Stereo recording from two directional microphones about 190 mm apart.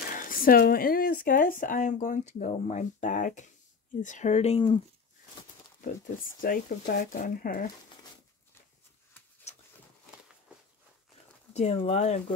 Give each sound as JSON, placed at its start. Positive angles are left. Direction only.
{"t": 0.1, "sound": "speech", "side_deg": 50}
{"t": 6.4, "sound": "speech", "side_deg": 50}
{"t": 9.5, "sound": "a sound", "side_deg": 35}
{"t": 11.5, "sound": "speech", "side_deg": 35}